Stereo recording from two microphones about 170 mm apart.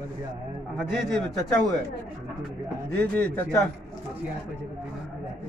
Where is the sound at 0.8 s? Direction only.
Centre (ahead or behind).